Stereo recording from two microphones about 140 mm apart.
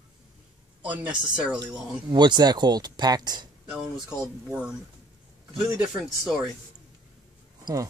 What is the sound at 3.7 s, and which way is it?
Speech, 5° right (ahead or behind).